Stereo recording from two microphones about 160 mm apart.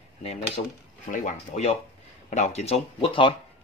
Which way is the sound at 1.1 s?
45° left (ahead or behind).